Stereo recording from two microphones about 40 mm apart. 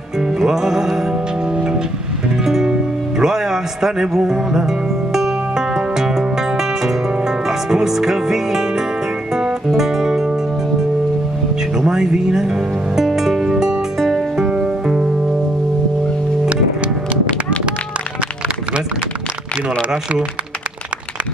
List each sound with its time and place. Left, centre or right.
0.2 s music: centre
11.7 s music: centre